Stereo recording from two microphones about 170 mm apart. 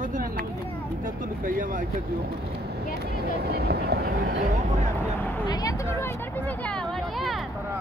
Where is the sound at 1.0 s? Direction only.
55° right (ahead or behind).